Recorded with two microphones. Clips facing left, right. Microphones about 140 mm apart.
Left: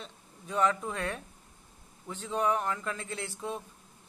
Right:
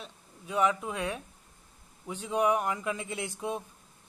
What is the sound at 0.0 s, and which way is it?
Speech, 10° right (ahead or behind).